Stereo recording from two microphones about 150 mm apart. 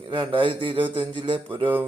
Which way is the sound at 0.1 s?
35° right (ahead or behind).